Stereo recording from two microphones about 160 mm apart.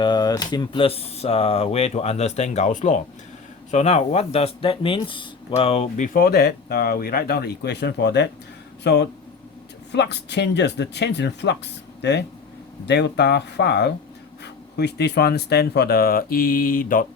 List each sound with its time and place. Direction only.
0.0 s speech: 25° left (ahead or behind)
6.1 s speech: 75° left (ahead or behind)